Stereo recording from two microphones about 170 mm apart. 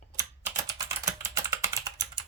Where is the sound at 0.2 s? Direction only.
20° right (ahead or behind).